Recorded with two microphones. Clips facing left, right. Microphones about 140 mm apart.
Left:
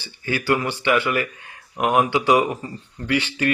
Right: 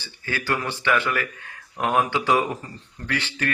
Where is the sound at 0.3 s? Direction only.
15° left (ahead or behind).